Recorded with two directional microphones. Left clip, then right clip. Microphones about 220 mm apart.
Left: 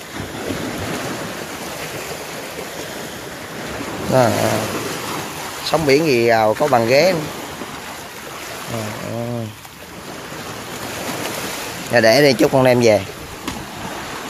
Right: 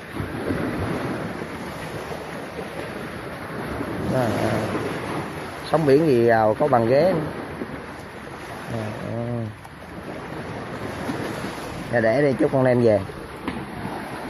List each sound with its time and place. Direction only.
4.1 s speech: 35° left (ahead or behind)
5.7 s speech: 15° left (ahead or behind)
6.6 s speech: 25° left (ahead or behind)
11.9 s speech: 30° left (ahead or behind)